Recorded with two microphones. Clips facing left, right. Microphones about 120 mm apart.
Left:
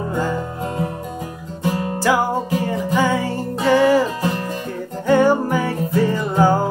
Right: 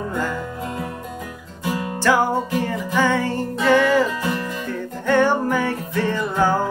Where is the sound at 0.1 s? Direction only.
25° left (ahead or behind).